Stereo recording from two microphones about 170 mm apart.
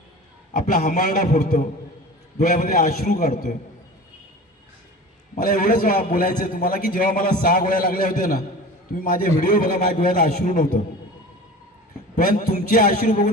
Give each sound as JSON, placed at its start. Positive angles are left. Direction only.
{"t": 0.5, "sound": "a man's voice", "side_deg": 45}
{"t": 5.3, "sound": "a man's voice", "side_deg": 50}
{"t": 12.1, "sound": "a man's voice", "side_deg": 50}